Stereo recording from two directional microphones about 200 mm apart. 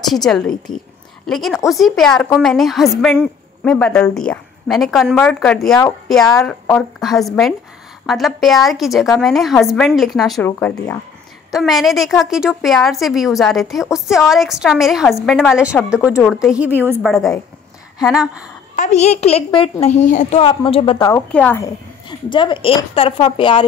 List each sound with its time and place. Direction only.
0.0 s a woman's voice: centre (ahead or behind)
18.1 s a woman's voice: 5° right (ahead or behind)
18.8 s a woman's voice: 35° left (ahead or behind)
21.1 s a woman's voice: 5° left (ahead or behind)
22.3 s a woman's voice: 25° left (ahead or behind)